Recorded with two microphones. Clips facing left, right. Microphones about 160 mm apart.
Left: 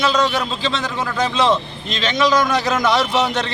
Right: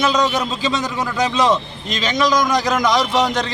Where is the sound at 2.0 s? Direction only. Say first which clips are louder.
Left 1 dB; 10° right (ahead or behind).